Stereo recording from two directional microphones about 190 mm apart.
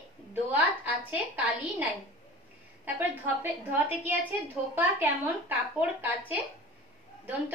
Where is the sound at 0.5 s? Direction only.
10° right (ahead or behind).